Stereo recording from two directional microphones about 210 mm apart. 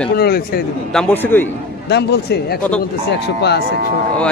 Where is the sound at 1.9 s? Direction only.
50° left (ahead or behind).